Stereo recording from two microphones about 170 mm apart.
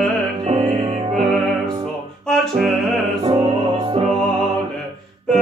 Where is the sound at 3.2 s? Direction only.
35° right (ahead or behind).